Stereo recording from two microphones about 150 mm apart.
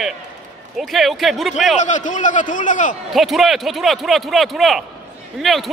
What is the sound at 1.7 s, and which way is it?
A man's voice, 55° left (ahead or behind).